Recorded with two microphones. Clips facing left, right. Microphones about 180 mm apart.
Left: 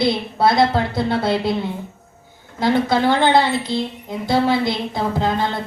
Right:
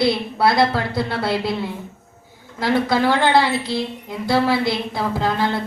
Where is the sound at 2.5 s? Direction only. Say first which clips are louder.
Left 1 dB; 20° left (ahead or behind).